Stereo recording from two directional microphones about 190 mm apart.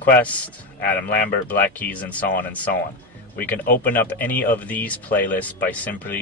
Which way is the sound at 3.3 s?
10° left (ahead or behind).